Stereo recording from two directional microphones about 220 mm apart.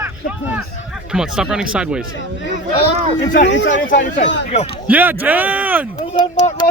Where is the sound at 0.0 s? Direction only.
10° right (ahead or behind).